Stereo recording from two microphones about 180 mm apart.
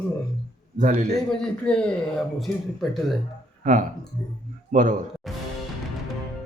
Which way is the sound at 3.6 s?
45° right (ahead or behind).